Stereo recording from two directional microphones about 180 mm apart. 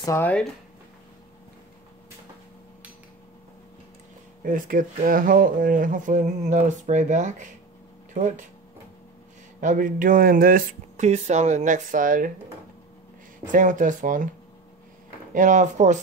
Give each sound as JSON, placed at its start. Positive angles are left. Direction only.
{"t": 0.0, "sound": "speech", "side_deg": 15}
{"t": 4.4, "sound": "speech", "side_deg": -50}
{"t": 9.6, "sound": "speech", "side_deg": -45}
{"t": 13.5, "sound": "speech", "side_deg": -45}
{"t": 15.3, "sound": "speech", "side_deg": -45}